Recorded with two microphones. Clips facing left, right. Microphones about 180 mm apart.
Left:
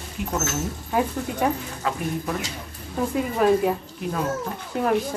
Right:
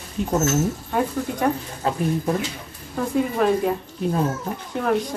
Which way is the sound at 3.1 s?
Centre (ahead or behind).